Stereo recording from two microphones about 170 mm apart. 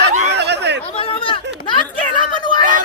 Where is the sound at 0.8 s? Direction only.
35° left (ahead or behind).